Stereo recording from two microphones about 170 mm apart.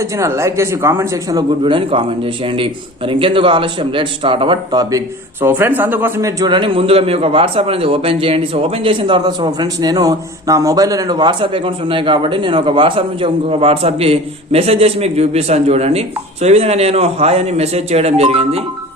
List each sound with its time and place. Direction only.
0.0 s speech: 15° right (ahead or behind); by 18.6 s 35° right (ahead or behind)